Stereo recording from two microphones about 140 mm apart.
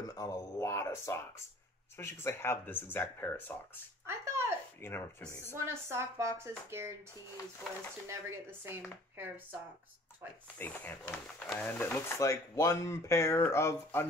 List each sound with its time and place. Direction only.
0.1 s speech: 25° left (ahead or behind)
4.0 s speech: 20° right (ahead or behind)
4.8 s speech: 15° left (ahead or behind)
5.7 s speech: 20° right (ahead or behind)
8.1 s speech: 15° right (ahead or behind)
10.6 s speech: 15° left (ahead or behind)